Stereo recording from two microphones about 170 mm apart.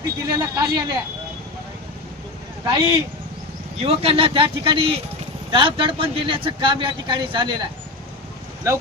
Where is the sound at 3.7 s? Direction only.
35° right (ahead or behind).